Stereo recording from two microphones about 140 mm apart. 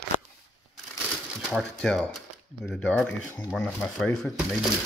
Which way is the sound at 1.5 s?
Centre (ahead or behind).